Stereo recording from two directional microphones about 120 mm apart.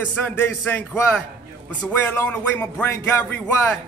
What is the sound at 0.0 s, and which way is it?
Speech, 15° left (ahead or behind).